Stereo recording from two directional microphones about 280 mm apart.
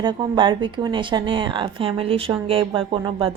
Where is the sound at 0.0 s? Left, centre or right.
Centre.